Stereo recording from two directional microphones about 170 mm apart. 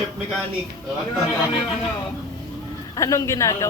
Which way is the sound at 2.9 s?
20° left (ahead or behind).